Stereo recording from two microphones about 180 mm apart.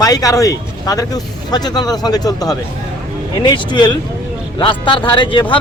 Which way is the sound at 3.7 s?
25° left (ahead or behind).